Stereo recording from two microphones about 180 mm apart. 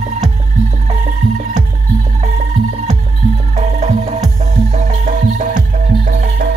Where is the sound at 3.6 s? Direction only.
40° right (ahead or behind).